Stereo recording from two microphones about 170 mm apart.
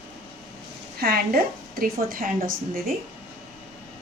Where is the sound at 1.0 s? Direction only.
65° right (ahead or behind).